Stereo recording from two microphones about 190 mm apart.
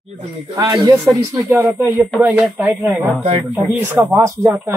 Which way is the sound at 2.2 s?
5° right (ahead or behind).